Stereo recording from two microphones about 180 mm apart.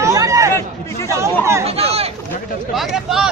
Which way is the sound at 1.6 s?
35° right (ahead or behind).